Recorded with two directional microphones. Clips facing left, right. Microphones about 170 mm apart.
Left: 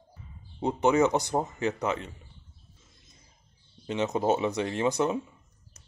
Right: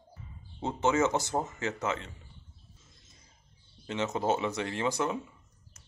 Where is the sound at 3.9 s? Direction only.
15° left (ahead or behind).